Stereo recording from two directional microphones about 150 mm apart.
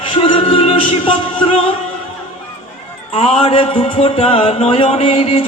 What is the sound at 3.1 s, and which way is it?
Music, 40° left (ahead or behind).